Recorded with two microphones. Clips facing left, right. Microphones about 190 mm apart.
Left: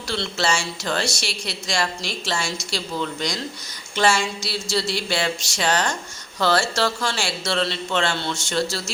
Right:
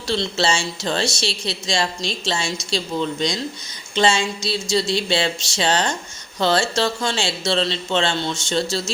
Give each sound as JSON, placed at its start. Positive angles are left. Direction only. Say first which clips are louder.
{"t": 0.1, "sound": "speech", "louder": "right 3 dB", "side_deg": -25}